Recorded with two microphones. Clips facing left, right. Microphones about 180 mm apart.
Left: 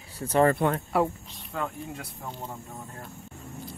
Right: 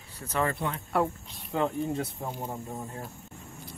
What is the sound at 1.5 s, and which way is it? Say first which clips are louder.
Speech: right 6 dB; 25° right (ahead or behind).